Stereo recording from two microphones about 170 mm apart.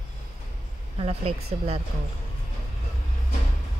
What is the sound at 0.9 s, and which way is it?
Speech, 35° right (ahead or behind).